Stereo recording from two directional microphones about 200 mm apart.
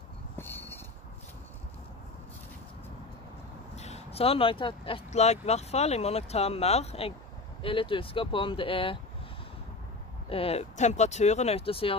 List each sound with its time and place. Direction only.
0.4 s a sound: 10° left (ahead or behind)
3.7 s speech: 35° left (ahead or behind)
10.3 s speech: 30° left (ahead or behind)